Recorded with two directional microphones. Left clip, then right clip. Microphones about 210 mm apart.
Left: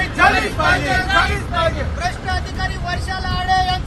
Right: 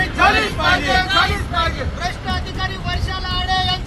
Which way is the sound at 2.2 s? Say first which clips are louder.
Left 1 dB; 20° left (ahead or behind).